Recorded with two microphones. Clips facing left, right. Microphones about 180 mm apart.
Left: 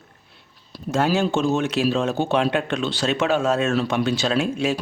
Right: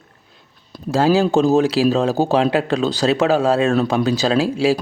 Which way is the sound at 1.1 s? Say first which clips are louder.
Right 6 dB; 35° right (ahead or behind).